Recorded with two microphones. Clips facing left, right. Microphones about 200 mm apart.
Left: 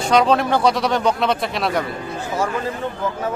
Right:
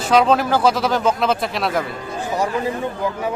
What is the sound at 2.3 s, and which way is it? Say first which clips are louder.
Speech: right 2 dB; 15° right (ahead or behind).